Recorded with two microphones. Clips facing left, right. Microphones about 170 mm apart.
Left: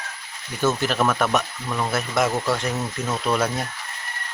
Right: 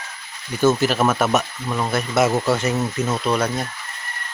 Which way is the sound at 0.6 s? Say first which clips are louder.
Right 5 dB; centre (ahead or behind).